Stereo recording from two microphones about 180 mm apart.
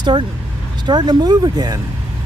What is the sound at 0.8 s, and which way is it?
Speech, 25° right (ahead or behind).